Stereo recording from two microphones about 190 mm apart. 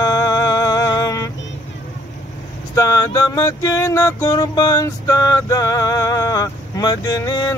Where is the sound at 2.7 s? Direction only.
15° left (ahead or behind).